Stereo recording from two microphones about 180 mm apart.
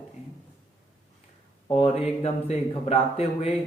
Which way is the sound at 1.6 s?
35° left (ahead or behind).